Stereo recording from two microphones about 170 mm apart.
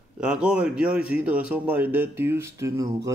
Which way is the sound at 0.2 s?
5° right (ahead or behind).